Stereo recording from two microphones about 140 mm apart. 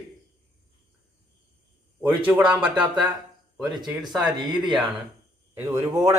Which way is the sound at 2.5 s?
10° right (ahead or behind).